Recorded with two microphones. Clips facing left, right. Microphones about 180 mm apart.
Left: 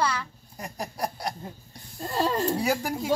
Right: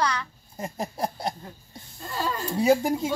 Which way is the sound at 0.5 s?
25° right (ahead or behind).